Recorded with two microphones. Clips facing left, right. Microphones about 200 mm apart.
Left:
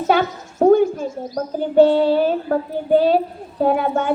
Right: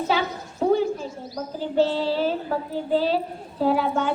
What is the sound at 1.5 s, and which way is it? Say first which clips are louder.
Speech: left 9 dB; 55° left (ahead or behind).